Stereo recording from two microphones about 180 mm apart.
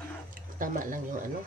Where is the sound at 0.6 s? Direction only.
50° right (ahead or behind).